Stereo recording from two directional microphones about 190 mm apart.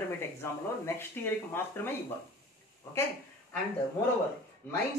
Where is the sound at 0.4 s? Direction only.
10° left (ahead or behind).